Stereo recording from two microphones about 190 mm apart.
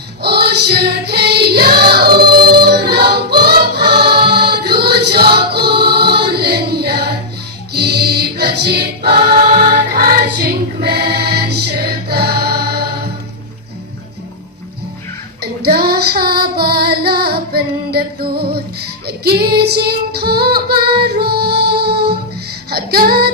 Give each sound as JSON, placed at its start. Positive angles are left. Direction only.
{"t": 0.2, "sound": "music", "side_deg": -55}
{"t": 15.4, "sound": "female singing", "side_deg": -55}
{"t": 21.0, "sound": "music", "side_deg": -55}
{"t": 22.7, "sound": "child singing", "side_deg": -55}